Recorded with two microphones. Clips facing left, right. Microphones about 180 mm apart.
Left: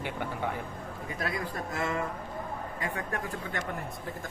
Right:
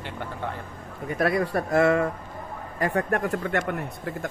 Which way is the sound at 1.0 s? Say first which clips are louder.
Right 11 dB; 65° right (ahead or behind).